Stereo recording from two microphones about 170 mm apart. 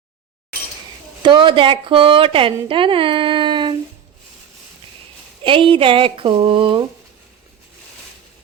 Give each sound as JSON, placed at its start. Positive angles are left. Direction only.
{"t": 1.2, "sound": "a woman's voice", "side_deg": -30}
{"t": 5.4, "sound": "a woman's voice", "side_deg": -30}